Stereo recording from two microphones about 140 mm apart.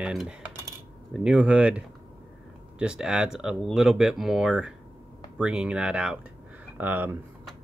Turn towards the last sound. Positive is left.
turn(degrees=-15)  # may be behind; listen again after turning